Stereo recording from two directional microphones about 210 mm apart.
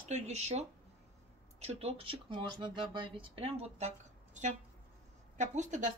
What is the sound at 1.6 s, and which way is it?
Speech, 30° right (ahead or behind).